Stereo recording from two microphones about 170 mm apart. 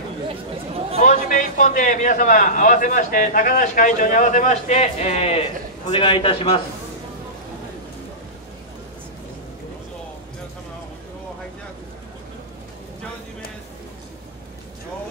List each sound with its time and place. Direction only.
1.0 s a man's voice: 45° left (ahead or behind); by 6.6 s 30° left (ahead or behind)